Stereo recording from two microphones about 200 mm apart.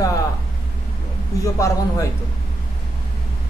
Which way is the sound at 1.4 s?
15° left (ahead or behind).